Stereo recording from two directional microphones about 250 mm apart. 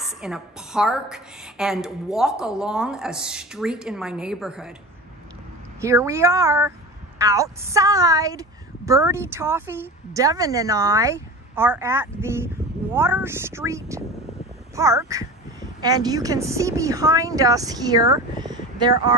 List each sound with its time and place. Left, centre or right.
0.0 s a woman's voice: centre
5.8 s a woman's voice: centre